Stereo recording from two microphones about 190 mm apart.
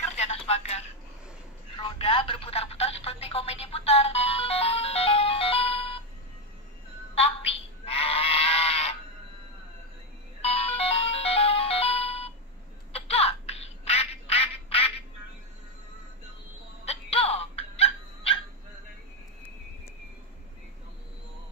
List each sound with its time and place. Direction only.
0.2 s telephone: 35° left (ahead or behind)
1.8 s speech: 25° left (ahead or behind)
7.2 s a sound: 30° left (ahead or behind)
10.4 s music: 30° left (ahead or behind)
12.9 s a sound: 30° left (ahead or behind)
16.8 s music: 30° left (ahead or behind)